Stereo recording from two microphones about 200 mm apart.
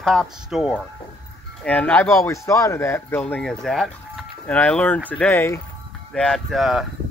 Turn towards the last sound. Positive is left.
turn(degrees=0)  # may be behind; listen again after turning